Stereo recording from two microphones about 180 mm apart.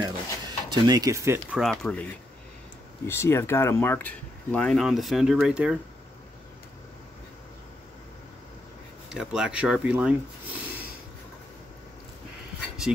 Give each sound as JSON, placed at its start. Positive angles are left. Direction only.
{"t": 0.0, "sound": "a sound", "side_deg": -25}
{"t": 1.6, "sound": "speech", "side_deg": 5}
{"t": 3.1, "sound": "speech", "side_deg": 15}
{"t": 9.1, "sound": "speech", "side_deg": -5}